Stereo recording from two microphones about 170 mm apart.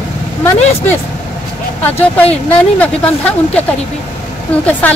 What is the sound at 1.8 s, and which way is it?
A woman's voice, 10° left (ahead or behind).